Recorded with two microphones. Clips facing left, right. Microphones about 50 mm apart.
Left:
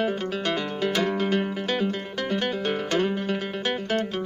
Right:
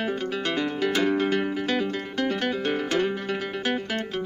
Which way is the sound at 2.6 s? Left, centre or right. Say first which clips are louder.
Even; centre.